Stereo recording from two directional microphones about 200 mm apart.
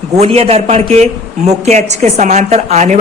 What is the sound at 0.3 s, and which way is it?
A woman's voice, 30° right (ahead or behind).